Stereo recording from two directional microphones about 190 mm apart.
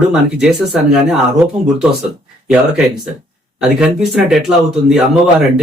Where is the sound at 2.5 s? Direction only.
5° right (ahead or behind).